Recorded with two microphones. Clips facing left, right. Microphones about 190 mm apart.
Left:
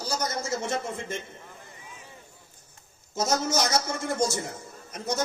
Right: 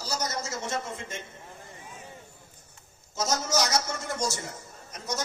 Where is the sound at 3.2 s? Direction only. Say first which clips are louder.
Left 2 dB; 55° left (ahead or behind).